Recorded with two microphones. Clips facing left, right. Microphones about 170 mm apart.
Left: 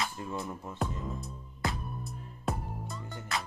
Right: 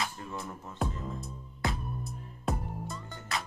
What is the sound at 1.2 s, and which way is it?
Music, centre (ahead or behind).